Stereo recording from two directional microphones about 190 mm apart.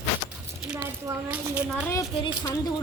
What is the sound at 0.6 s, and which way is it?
Speech, 10° right (ahead or behind).